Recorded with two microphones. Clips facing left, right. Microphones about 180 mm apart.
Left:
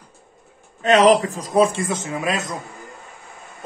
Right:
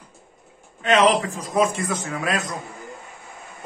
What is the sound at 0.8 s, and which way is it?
A man's voice, 40° left (ahead or behind).